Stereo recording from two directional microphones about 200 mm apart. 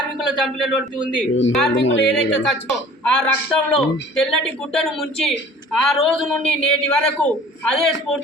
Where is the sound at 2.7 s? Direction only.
5° left (ahead or behind).